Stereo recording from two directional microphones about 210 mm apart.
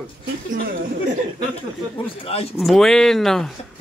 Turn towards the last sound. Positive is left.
turn(degrees=0)  # may be behind; listen again after turning